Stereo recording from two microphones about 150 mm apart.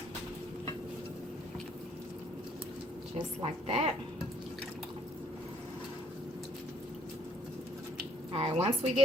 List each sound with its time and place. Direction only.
3.4 s a woman's voice: 45° right (ahead or behind)
8.3 s a woman's voice: 40° right (ahead or behind)